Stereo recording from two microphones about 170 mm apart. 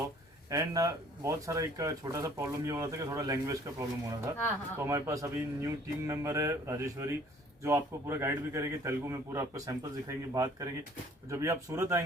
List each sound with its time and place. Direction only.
0.5 s a man's voice: 20° right (ahead or behind)